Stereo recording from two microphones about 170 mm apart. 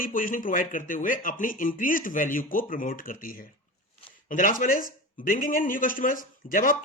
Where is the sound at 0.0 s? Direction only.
55° left (ahead or behind).